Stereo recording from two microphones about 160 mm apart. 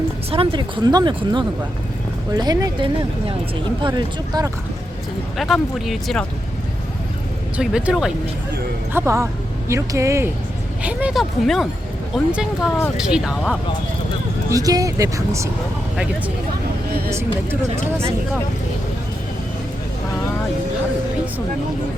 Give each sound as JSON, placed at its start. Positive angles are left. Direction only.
{"t": 0.3, "sound": "speech", "side_deg": -35}
{"t": 5.4, "sound": "speech", "side_deg": 0}
{"t": 7.5, "sound": "speech", "side_deg": -5}
{"t": 10.8, "sound": "speech", "side_deg": -5}
{"t": 14.5, "sound": "speech", "side_deg": -20}